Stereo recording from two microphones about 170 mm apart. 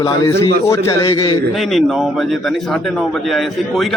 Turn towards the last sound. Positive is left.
turn(degrees=0)  # may be behind; listen again after turning